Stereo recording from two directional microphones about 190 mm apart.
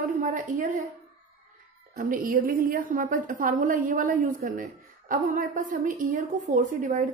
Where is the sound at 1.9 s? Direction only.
50° right (ahead or behind).